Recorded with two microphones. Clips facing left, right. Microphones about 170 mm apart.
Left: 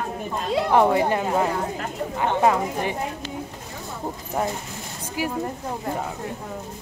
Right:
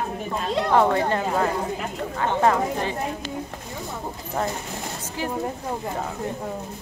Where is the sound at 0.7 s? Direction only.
15° left (ahead or behind).